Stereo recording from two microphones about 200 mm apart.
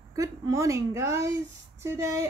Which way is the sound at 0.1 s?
15° right (ahead or behind).